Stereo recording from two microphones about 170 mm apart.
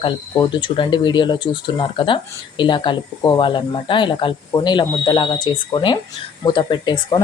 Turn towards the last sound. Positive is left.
turn(degrees=25)  # may be behind; listen again after turning